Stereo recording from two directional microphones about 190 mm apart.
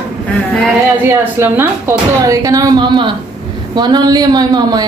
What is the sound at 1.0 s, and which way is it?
A woman's voice, 10° right (ahead or behind).